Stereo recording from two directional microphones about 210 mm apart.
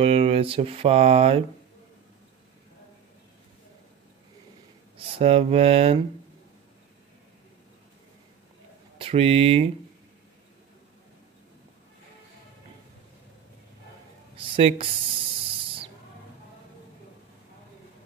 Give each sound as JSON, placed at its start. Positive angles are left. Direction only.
{"t": 0.0, "sound": "speech", "side_deg": -25}
{"t": 4.9, "sound": "speech", "side_deg": -30}
{"t": 8.9, "sound": "speech", "side_deg": -25}
{"t": 14.3, "sound": "a sound", "side_deg": -25}